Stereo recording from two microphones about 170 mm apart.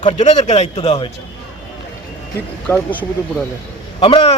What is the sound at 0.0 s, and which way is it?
A man's voice, 35° left (ahead or behind).